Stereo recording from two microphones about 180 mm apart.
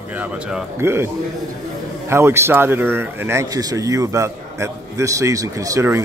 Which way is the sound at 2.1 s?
15° right (ahead or behind).